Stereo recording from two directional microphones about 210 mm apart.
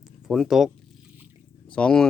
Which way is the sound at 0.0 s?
Centre (ahead or behind).